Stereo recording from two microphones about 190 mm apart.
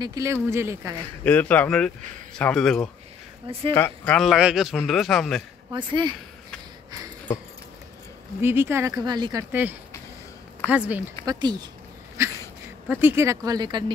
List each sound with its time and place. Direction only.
0.0 s speech: 20° right (ahead or behind)
1.2 s a man's voice: 10° left (ahead or behind)
5.7 s speech: 25° right (ahead or behind)
8.4 s speech: 10° right (ahead or behind)
10.6 s speech: 10° left (ahead or behind)
11.2 s speech: 20° right (ahead or behind)
12.2 s a sound: 15° right (ahead or behind)
12.8 s speech: 10° right (ahead or behind)